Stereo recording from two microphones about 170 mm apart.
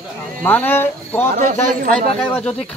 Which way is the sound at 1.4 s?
50° right (ahead or behind).